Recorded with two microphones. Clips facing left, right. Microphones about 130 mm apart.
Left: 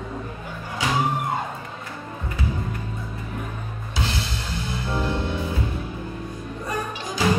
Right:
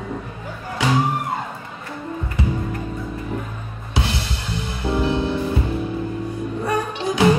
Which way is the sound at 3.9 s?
65° right (ahead or behind).